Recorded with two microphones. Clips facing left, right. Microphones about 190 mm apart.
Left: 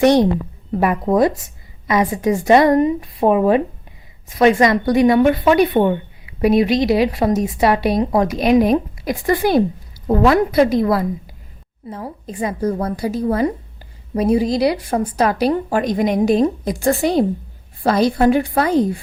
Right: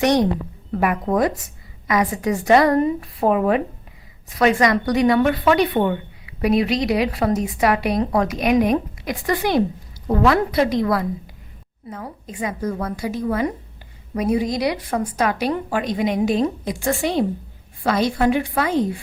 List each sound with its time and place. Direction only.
0.0 s a woman's voice: 30° left (ahead or behind)